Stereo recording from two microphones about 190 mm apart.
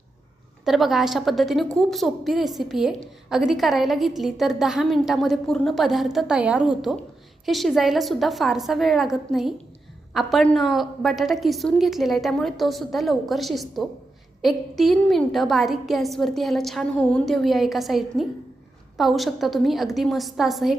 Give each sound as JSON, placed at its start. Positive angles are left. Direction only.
{"t": 0.6, "sound": "a woman's voice", "side_deg": 0}